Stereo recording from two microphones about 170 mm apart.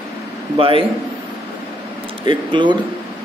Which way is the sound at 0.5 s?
30° right (ahead or behind).